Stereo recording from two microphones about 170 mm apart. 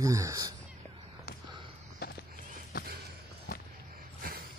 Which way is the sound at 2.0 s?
70° left (ahead or behind).